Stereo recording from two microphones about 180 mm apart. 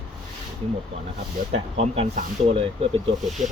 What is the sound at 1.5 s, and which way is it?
Speech, 35° right (ahead or behind).